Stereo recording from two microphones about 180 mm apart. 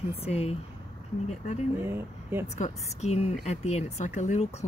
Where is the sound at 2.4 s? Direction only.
40° left (ahead or behind).